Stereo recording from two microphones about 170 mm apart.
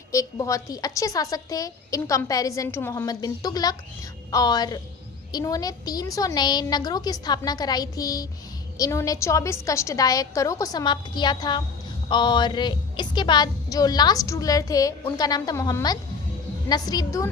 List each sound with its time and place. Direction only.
0.1 s a woman's voice: 20° left (ahead or behind)